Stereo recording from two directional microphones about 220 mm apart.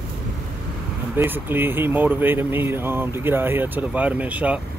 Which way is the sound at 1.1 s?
10° right (ahead or behind).